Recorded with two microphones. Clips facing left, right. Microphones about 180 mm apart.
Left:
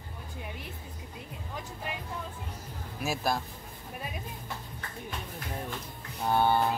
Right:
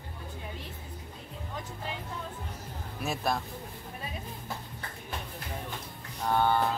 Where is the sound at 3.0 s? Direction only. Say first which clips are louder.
Left 1 dB; centre (ahead or behind).